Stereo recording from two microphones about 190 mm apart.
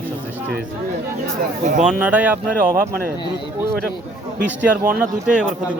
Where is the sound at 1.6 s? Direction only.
40° right (ahead or behind).